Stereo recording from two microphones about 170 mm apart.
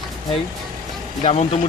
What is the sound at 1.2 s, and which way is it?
Speech, 35° left (ahead or behind).